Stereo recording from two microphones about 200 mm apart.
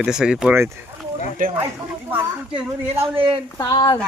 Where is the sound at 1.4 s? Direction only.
45° right (ahead or behind).